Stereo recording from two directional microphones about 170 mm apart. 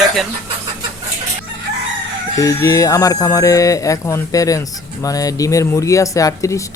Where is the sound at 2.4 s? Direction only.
20° left (ahead or behind).